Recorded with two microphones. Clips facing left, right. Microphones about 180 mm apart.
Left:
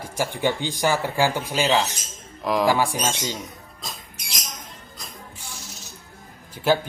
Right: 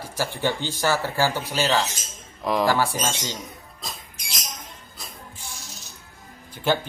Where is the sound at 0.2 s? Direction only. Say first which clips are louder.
Left 2 dB; 15° left (ahead or behind).